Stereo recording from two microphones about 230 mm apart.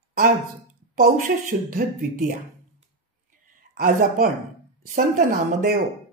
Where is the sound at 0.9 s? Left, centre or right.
Right.